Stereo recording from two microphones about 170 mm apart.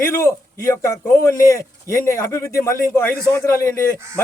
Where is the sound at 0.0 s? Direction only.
15° left (ahead or behind).